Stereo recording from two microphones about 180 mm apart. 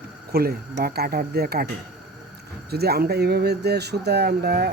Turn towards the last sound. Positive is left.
turn(degrees=-60)  # may be behind; listen again after turning